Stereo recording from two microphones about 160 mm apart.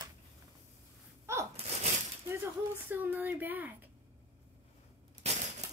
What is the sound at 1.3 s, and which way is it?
Speech, 15° right (ahead or behind).